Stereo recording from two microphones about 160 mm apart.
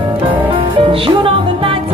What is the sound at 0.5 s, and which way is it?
Music, 35° right (ahead or behind).